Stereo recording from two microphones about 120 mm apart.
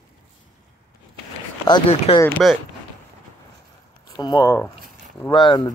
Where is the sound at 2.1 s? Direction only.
55° left (ahead or behind).